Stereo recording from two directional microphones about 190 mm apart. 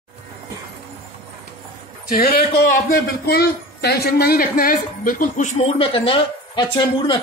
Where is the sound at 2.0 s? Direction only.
55° left (ahead or behind).